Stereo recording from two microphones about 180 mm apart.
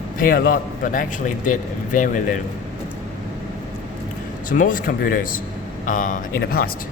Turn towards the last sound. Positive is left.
turn(degrees=55)  # may be behind; listen again after turning